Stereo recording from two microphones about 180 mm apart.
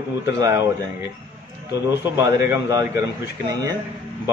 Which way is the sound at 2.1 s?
15° right (ahead or behind).